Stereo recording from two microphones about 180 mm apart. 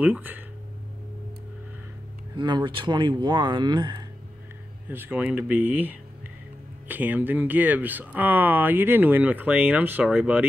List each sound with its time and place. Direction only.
0.0 s speech: 10° right (ahead or behind)
2.3 s speech: 25° right (ahead or behind)
4.8 s speech: 10° right (ahead or behind)